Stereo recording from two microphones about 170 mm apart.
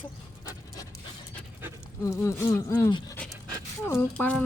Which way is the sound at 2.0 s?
15° left (ahead or behind).